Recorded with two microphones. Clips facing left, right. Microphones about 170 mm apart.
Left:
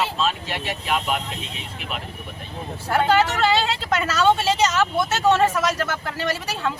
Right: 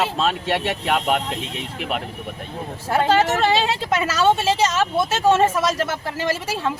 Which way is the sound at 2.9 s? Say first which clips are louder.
Right 1 dB; 20° right (ahead or behind).